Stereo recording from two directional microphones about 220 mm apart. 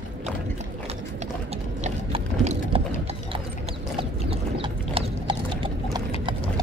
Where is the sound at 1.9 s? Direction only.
30° right (ahead or behind).